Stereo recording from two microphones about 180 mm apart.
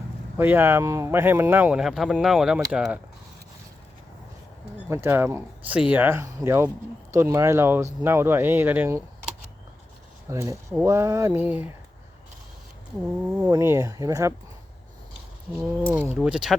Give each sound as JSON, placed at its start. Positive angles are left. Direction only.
{"t": 0.3, "sound": "speech", "side_deg": -10}
{"t": 4.9, "sound": "speech", "side_deg": -15}
{"t": 10.2, "sound": "speech", "side_deg": -15}
{"t": 13.2, "sound": "speech", "side_deg": -10}
{"t": 15.5, "sound": "speech", "side_deg": -10}